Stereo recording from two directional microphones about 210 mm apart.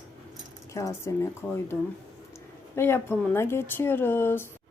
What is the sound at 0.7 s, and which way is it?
Speech, 15° left (ahead or behind).